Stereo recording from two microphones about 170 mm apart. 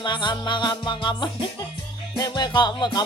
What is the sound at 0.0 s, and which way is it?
Speech, 25° left (ahead or behind).